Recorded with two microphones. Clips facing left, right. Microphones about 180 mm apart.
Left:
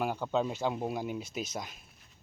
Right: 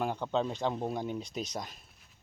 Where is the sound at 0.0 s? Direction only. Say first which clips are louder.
Even; 5° left (ahead or behind).